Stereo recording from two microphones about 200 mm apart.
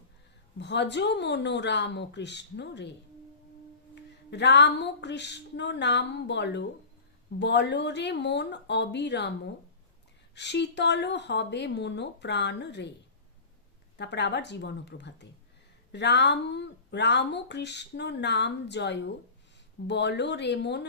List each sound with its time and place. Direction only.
0.6 s speech: 60° left (ahead or behind)
4.3 s speech: 60° left (ahead or behind)
10.3 s speech: 60° left (ahead or behind)
14.0 s speech: 60° left (ahead or behind)